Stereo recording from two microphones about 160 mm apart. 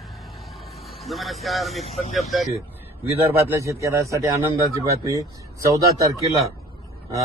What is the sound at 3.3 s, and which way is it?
Speech, 15° right (ahead or behind).